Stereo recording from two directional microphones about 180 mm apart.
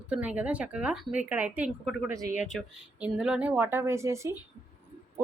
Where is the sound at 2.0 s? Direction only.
20° right (ahead or behind).